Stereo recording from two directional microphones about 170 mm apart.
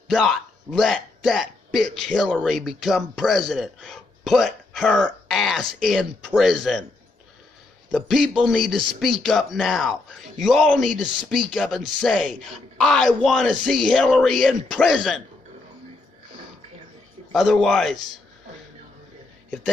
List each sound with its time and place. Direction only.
0.1 s speech: centre (ahead or behind)
7.9 s speech: centre (ahead or behind)
17.3 s speech: centre (ahead or behind)